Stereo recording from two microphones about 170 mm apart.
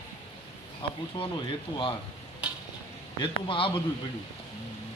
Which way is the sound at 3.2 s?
30° left (ahead or behind).